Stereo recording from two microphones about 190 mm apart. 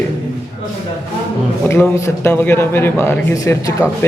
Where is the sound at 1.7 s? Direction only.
15° left (ahead or behind).